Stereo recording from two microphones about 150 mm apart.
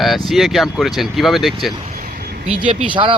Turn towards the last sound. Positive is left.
turn(degrees=-35)  # may be behind; listen again after turning